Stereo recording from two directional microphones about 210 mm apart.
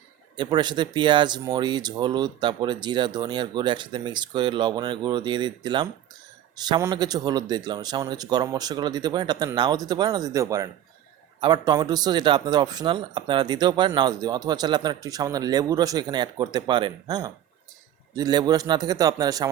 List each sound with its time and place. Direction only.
0.3 s a man's voice: 20° right (ahead or behind)